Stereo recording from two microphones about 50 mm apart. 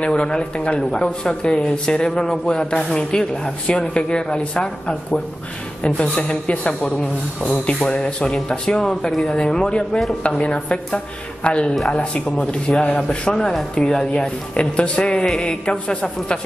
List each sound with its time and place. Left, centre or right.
0.0 s speech: centre